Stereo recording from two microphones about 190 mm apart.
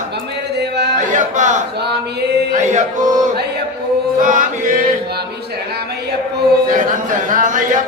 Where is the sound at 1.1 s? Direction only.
40° right (ahead or behind).